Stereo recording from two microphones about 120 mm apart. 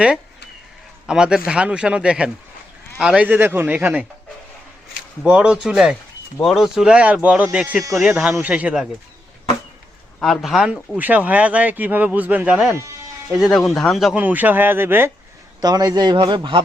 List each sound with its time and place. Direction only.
1.0 s a man's voice: 5° right (ahead or behind)
5.2 s a man's voice: 10° right (ahead or behind)
10.2 s a man's voice: centre (ahead or behind)
14.2 s a man's voice: 15° right (ahead or behind)
15.6 s a man's voice: 30° right (ahead or behind)